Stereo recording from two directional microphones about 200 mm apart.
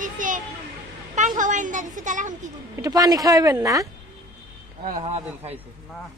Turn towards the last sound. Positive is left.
turn(degrees=-35)  # may be behind; listen again after turning